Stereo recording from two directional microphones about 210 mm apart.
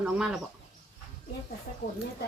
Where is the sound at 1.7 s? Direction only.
40° left (ahead or behind).